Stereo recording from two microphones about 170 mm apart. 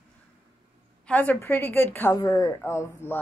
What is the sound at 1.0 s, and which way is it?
A woman's voice, 10° left (ahead or behind).